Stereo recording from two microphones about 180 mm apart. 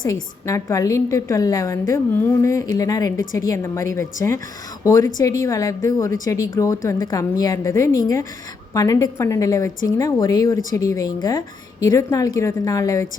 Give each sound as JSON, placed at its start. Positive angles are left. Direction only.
{"t": 0.0, "sound": "a woman's voice", "side_deg": 20}